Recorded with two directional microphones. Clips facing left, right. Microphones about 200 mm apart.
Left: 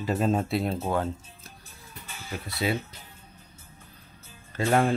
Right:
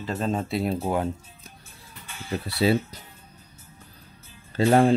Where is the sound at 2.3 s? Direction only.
30° right (ahead or behind).